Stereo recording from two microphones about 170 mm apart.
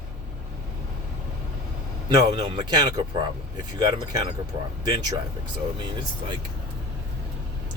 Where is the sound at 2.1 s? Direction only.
25° right (ahead or behind).